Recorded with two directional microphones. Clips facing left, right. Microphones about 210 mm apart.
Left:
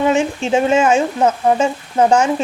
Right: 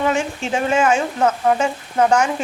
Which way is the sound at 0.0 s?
25° left (ahead or behind).